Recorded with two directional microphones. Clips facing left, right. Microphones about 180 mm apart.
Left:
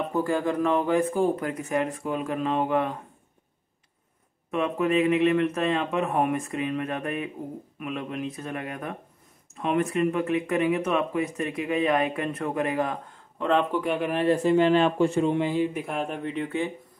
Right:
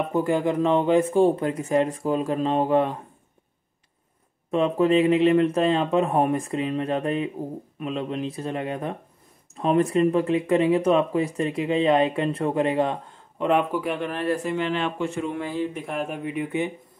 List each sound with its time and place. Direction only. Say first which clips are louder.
0.1 s speech: right 3 dB; 20° right (ahead or behind)
4.5 s speech: right 5 dB; 30° right (ahead or behind)
13.5 s speech: right 1 dB; 10° right (ahead or behind)
14.1 s speech: left 4 dB; 20° left (ahead or behind)
14.4 s speech: left 6 dB; 35° left (ahead or behind); by 15.8 s 15° left (ahead or behind)
15.8 s speech: right 1 dB; centre (ahead or behind); by 16.7 s 15° right (ahead or behind)